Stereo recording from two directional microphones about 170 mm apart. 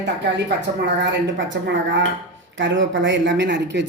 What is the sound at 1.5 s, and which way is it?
Speech, 90° right.